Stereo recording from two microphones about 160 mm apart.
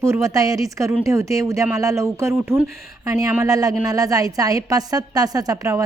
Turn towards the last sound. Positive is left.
turn(degrees=-20)  # may be behind; listen again after turning